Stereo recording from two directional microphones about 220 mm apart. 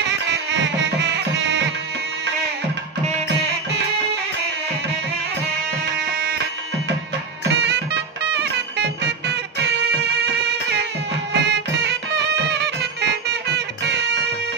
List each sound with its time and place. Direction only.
0.0 s music: 50° right (ahead or behind)
7.6 s music: 50° right (ahead or behind)